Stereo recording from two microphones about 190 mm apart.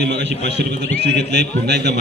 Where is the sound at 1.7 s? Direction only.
60° right (ahead or behind).